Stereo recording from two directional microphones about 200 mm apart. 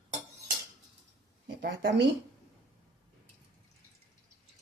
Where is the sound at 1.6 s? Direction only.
60° right (ahead or behind).